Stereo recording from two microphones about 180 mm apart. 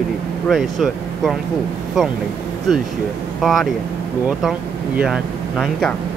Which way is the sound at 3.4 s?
Centre (ahead or behind).